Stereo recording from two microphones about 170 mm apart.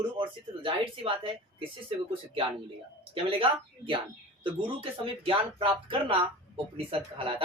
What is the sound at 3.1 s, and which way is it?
Speech, 30° right (ahead or behind).